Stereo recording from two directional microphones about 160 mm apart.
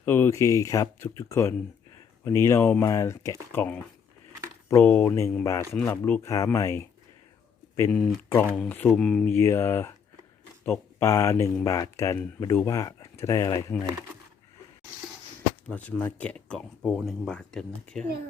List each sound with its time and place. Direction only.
0.0 s speech: 15° left (ahead or behind)
11.0 s speech: 20° left (ahead or behind)
15.7 s speech: 10° left (ahead or behind)